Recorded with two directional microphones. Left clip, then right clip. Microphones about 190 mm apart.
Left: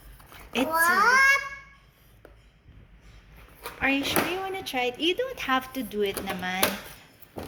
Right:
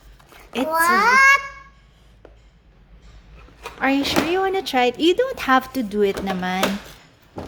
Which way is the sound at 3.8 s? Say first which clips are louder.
Right 5 dB; 35° right (ahead or behind).